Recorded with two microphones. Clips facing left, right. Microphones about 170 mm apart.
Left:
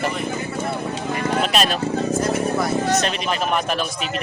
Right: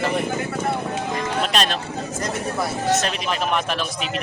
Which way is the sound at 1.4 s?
5° left (ahead or behind).